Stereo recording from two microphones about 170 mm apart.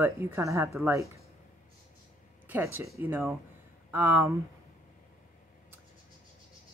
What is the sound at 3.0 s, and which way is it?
Speech, 15° right (ahead or behind).